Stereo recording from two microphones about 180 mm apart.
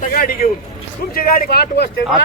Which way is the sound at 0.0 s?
50° left (ahead or behind).